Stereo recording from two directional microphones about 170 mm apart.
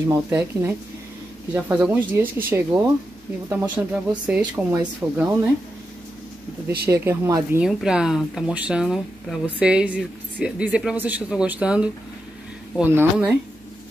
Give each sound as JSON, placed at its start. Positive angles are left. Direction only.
{"t": 0.1, "sound": "speech", "side_deg": -15}
{"t": 6.9, "sound": "speech", "side_deg": -15}
{"t": 7.6, "sound": "speech", "side_deg": -5}